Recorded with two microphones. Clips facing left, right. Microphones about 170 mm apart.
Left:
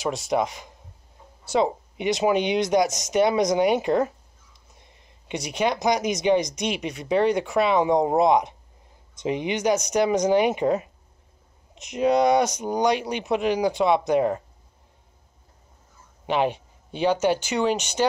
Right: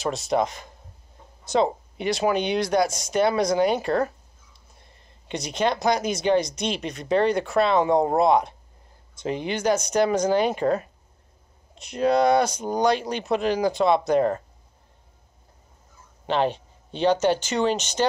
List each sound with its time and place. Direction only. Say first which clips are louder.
0.0 s speech: right 1 dB; 15° left (ahead or behind)
16.3 s speech: even; 10° left (ahead or behind)